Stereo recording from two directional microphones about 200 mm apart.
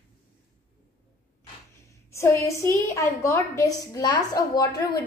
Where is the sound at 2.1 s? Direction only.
15° left (ahead or behind).